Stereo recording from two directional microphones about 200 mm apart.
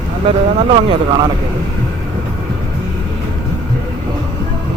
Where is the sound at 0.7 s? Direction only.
25° right (ahead or behind).